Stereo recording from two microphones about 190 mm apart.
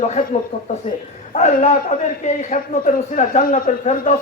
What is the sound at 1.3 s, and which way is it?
Speech, 35° left (ahead or behind).